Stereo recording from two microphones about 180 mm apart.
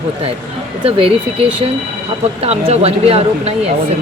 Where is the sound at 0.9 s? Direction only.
30° right (ahead or behind).